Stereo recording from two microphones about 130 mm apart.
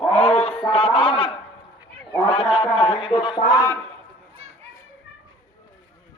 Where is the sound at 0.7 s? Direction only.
40° left (ahead or behind).